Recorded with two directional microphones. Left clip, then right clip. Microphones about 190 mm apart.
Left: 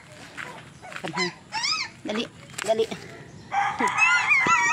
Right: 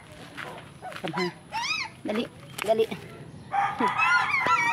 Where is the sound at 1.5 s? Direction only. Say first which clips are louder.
Left 2 dB; 10° right (ahead or behind).